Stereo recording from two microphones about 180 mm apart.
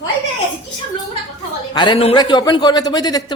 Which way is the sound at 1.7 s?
25° left (ahead or behind).